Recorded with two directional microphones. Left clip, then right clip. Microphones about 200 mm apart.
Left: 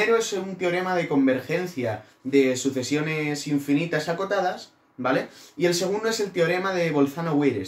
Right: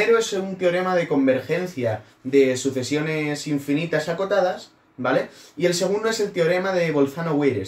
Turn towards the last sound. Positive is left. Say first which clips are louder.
# right 2 dB
turn(degrees=15)  # may be behind; listen again after turning